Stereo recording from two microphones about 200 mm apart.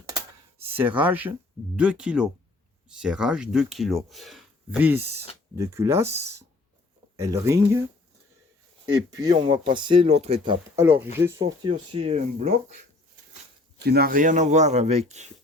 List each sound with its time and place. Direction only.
0.6 s speech: 10° right (ahead or behind)
7.2 s speech: 15° right (ahead or behind)
9.0 s speech: 20° right (ahead or behind)
10.8 s speech: 10° right (ahead or behind)
11.3 s speech: 25° right (ahead or behind)
13.7 s speech: 50° right (ahead or behind); by 15.3 s 35° right (ahead or behind)